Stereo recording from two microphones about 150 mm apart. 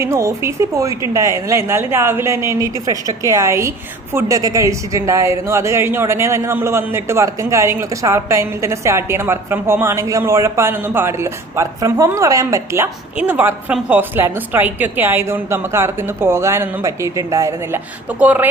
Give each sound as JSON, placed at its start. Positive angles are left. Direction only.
{"t": 0.0, "sound": "a woman's voice", "side_deg": -20}
{"t": 18.2, "sound": "a woman's voice", "side_deg": -10}